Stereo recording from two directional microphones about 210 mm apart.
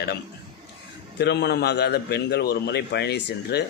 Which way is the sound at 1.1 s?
50° left (ahead or behind).